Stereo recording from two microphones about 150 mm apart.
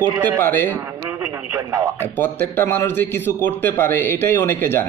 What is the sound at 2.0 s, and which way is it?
Speech, 15° left (ahead or behind).